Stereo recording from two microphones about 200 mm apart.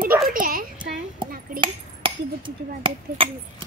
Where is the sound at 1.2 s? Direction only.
25° right (ahead or behind).